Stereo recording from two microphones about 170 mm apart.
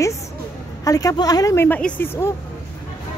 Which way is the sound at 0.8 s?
20° left (ahead or behind).